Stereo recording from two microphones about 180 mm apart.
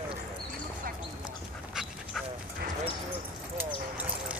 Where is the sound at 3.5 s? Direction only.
10° right (ahead or behind).